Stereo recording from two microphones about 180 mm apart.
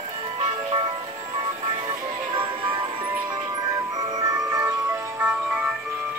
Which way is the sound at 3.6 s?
20° right (ahead or behind).